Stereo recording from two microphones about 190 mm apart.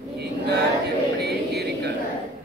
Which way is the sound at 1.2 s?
60° right (ahead or behind).